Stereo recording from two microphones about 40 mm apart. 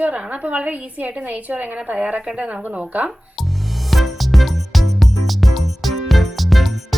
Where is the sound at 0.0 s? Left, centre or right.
Right.